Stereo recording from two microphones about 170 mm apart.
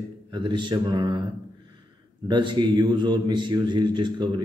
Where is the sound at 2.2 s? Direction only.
25° right (ahead or behind).